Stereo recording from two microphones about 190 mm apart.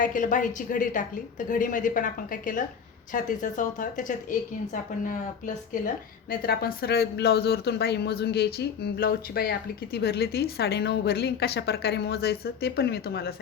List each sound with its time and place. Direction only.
0.0 s speech: 45° left (ahead or behind)
6.3 s speech: 50° left (ahead or behind)